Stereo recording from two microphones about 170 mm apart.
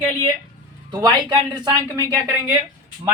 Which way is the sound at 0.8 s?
25° right (ahead or behind).